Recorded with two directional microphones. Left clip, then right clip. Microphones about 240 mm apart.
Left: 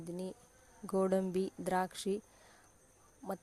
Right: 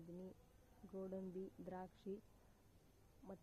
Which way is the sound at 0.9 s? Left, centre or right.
Left.